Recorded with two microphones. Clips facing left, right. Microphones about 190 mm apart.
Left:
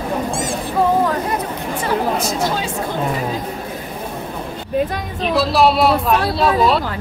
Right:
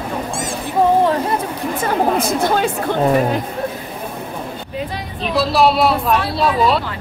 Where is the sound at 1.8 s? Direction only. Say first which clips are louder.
Right 2 dB; 55° right (ahead or behind).